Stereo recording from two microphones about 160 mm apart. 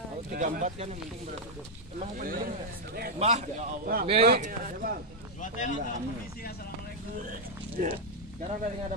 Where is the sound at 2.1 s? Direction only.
60° right (ahead or behind).